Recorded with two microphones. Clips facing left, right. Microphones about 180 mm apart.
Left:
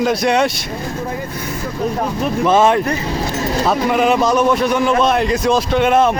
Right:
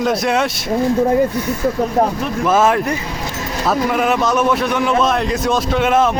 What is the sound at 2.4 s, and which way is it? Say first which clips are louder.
A man's voice: left 1 dB; 5° right (ahead or behind).